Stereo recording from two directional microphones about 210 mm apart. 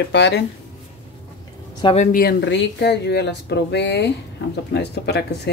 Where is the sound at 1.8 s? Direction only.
35° left (ahead or behind).